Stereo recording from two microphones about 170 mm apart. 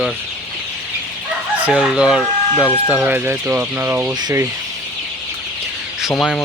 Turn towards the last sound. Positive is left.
turn(degrees=5)  # may be behind; listen again after turning